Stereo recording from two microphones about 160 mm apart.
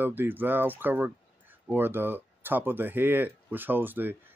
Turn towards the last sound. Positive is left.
turn(degrees=-10)  # may be behind; listen again after turning